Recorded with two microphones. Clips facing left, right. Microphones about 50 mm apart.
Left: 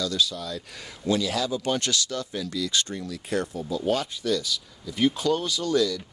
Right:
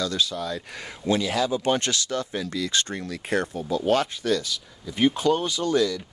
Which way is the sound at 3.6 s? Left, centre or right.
Right.